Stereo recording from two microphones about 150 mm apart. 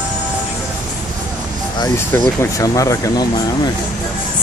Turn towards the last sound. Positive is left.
turn(degrees=25)  # may be behind; listen again after turning